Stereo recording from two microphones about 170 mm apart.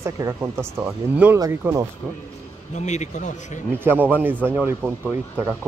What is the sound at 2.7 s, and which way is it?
Speech, 45° left (ahead or behind).